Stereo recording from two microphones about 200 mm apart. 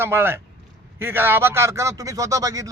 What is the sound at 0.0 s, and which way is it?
Speech, 10° right (ahead or behind).